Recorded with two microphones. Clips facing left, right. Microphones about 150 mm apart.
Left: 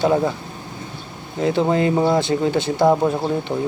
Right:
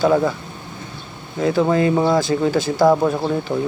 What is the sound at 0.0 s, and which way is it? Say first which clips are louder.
Speech: right 2 dB; 30° left (ahead or behind).